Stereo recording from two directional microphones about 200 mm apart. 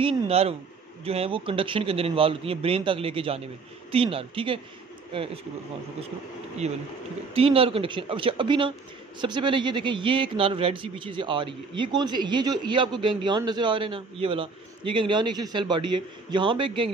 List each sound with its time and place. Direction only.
0.0 s a man's voice: 30° right (ahead or behind)
6.6 s a man's voice: 35° right (ahead or behind)